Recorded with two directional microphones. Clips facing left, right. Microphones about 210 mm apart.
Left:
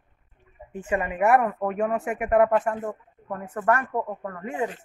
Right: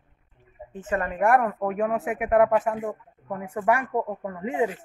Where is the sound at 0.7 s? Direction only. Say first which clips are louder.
Left 1 dB; 10° left (ahead or behind).